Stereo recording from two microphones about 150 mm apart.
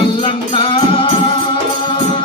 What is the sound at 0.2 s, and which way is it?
Music, 35° left (ahead or behind).